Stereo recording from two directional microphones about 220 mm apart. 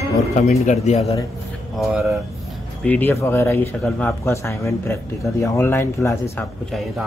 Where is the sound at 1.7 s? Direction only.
Centre (ahead or behind).